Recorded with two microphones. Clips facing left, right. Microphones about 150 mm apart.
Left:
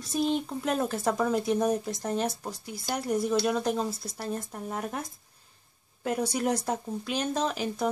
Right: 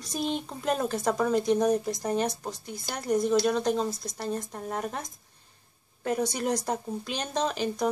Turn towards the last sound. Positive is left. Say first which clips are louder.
# right 1 dB
turn(degrees=5)  # may be behind; listen again after turning